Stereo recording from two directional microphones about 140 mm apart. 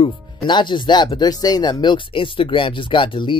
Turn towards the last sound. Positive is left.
turn(degrees=35)  # may be behind; listen again after turning